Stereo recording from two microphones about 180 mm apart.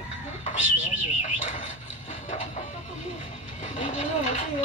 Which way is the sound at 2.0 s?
40° left (ahead or behind).